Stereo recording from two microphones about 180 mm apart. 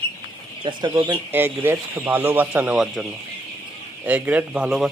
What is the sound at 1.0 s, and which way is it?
Speech, 10° right (ahead or behind).